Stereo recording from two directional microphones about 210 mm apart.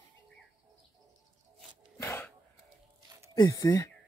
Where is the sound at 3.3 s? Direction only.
15° left (ahead or behind).